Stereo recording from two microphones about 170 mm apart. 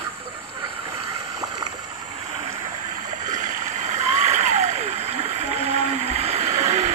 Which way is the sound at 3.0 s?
45° right (ahead or behind).